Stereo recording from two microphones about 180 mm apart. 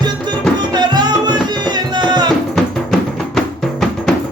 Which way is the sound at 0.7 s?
25° right (ahead or behind).